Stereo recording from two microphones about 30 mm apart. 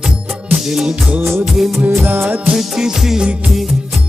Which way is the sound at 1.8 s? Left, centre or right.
Right.